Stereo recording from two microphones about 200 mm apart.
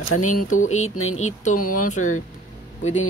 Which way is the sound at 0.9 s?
90° left.